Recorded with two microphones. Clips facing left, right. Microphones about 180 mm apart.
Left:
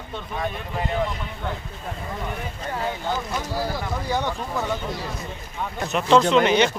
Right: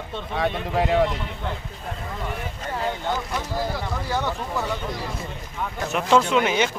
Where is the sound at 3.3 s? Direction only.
5° left (ahead or behind).